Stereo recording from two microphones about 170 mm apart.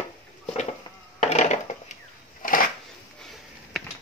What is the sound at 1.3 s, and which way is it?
Wood, 40° left (ahead or behind).